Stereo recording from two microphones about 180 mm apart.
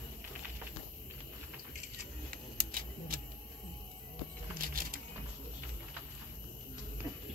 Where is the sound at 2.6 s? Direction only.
55° right (ahead or behind).